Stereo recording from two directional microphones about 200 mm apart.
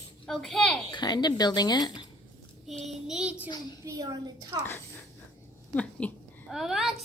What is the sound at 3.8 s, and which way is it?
Speech, 15° right (ahead or behind).